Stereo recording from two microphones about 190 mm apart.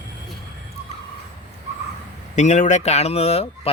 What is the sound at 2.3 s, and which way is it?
Speech, 40° left (ahead or behind).